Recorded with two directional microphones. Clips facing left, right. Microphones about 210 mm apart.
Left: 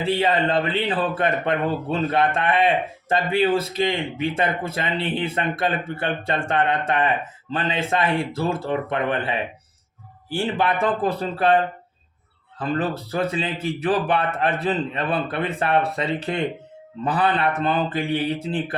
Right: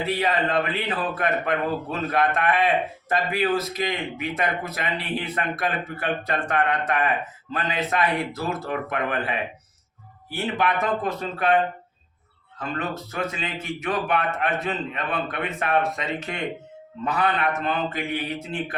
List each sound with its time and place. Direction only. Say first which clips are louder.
0.0 s a man's voice: left 3 dB; 30° left (ahead or behind)
12.5 s a man's voice: left 5 dB; 35° left (ahead or behind)